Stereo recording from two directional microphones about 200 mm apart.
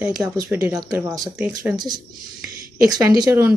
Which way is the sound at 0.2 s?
15° right (ahead or behind).